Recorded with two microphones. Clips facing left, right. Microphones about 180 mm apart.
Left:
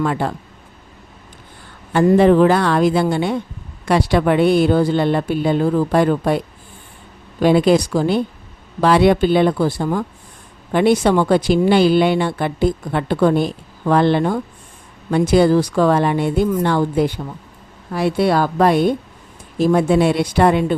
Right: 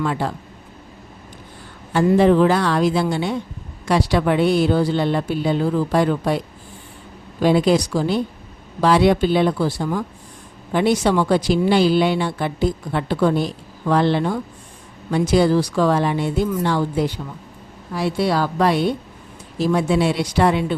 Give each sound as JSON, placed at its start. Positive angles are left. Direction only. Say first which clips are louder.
{"t": 0.0, "sound": "speech", "louder": "left 3 dB", "side_deg": 55}
{"t": 1.9, "sound": "a woman's voice", "louder": "left 3 dB", "side_deg": 55}
{"t": 7.4, "sound": "a woman's voice", "louder": "left 3 dB", "side_deg": 60}